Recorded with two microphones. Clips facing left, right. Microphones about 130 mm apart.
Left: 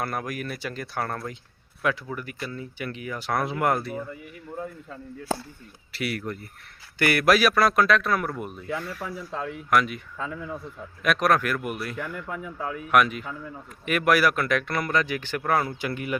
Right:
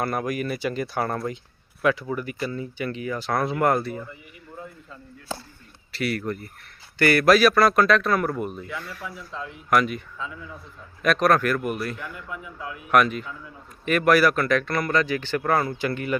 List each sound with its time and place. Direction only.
0.0 s speech: centre (ahead or behind)
4.5 s chop: 50° left (ahead or behind)
5.9 s speech: 10° left (ahead or behind)
8.7 s speech: 40° left (ahead or behind)
9.6 s speech: centre (ahead or behind)
11.0 s speech: 10° left (ahead or behind)
11.9 s speech: 50° left (ahead or behind)
12.9 s speech: 5° left (ahead or behind)